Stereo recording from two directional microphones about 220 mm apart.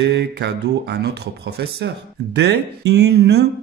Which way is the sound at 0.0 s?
50° right (ahead or behind).